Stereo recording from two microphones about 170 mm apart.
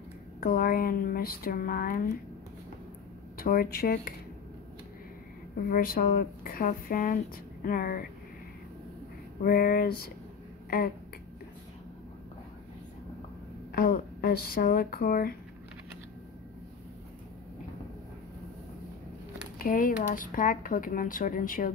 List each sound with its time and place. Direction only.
0.4 s speech: 60° left (ahead or behind)
3.3 s speech: 60° left (ahead or behind)
5.7 s speech: 55° left (ahead or behind)
9.4 s speech: 60° left (ahead or behind)
13.7 s speech: 65° left (ahead or behind)
19.6 s speech: 55° left (ahead or behind)